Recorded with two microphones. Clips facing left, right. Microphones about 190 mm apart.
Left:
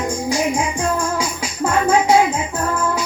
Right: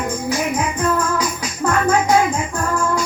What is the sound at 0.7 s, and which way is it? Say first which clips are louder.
Music: right 1 dB; 25° left (ahead or behind).